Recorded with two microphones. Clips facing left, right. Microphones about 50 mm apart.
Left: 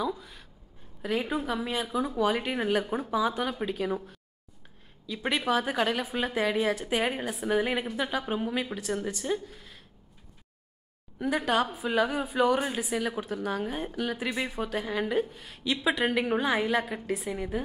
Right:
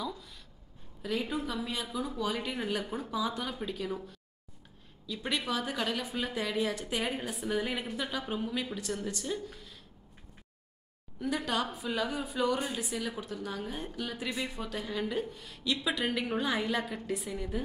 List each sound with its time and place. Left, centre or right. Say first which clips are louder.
1.0 s a woman's voice: left 4 dB; left
5.0 s a woman's voice: left 5 dB; left
11.1 s a woman's voice: left 6 dB; left
11.6 s a woman's voice: left 5 dB; centre
11.9 s a woman's voice: left 7 dB; left